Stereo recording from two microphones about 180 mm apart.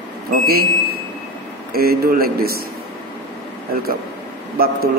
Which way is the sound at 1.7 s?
55° right (ahead or behind).